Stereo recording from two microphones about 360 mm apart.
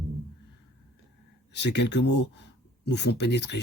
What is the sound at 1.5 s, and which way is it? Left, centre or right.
Speech, left.